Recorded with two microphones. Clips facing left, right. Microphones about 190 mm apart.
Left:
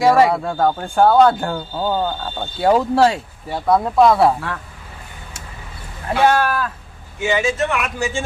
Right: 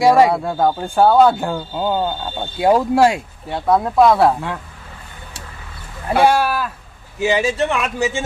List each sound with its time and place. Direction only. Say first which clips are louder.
0.0 s speech: right 1 dB; 15° right (ahead or behind)
3.5 s speech: even; centre (ahead or behind)
4.4 s speech: right 2 dB; 15° right (ahead or behind)
6.1 s speech: right 1 dB; 10° right (ahead or behind)
7.2 s speech: right 2 dB; 35° right (ahead or behind); by 8.2 s 20° right (ahead or behind)